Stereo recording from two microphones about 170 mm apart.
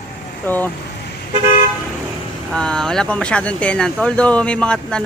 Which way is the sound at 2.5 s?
5° left (ahead or behind).